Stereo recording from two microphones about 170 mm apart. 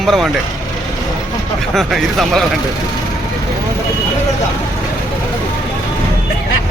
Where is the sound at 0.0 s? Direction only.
Centre (ahead or behind).